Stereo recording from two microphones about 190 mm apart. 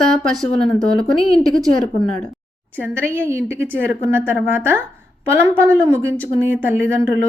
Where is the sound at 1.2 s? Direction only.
30° left (ahead or behind).